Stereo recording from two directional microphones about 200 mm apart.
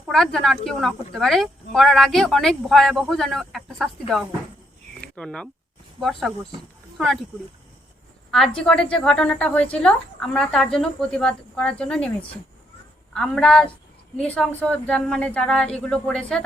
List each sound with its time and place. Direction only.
0.1 s speech: centre (ahead or behind)
4.9 s a sound: 5° left (ahead or behind)
6.0 s speech: centre (ahead or behind)
8.3 s speech: 5° left (ahead or behind)
13.1 s speech: centre (ahead or behind)